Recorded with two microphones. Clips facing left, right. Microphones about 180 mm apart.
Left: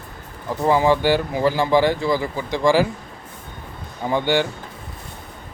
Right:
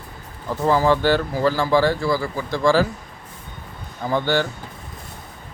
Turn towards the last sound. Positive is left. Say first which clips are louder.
# left 1 dB
turn(degrees=15)  # may be behind; listen again after turning